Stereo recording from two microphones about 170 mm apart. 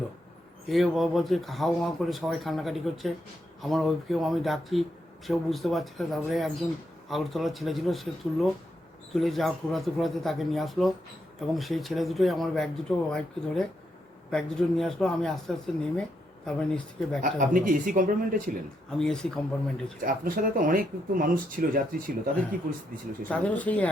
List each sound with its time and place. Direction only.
0.7 s speech: centre (ahead or behind)
17.2 s speech: 55° right (ahead or behind)
18.9 s speech: 5° left (ahead or behind)
20.1 s speech: 55° right (ahead or behind)
23.3 s speech: 10° left (ahead or behind)